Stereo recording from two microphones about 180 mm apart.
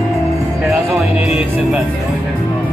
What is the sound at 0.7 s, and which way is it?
Music, 5° right (ahead or behind).